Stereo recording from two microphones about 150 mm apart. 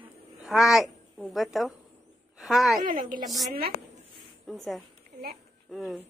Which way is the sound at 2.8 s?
65° right (ahead or behind).